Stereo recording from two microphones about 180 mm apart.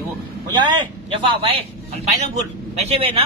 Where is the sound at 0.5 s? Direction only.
25° right (ahead or behind).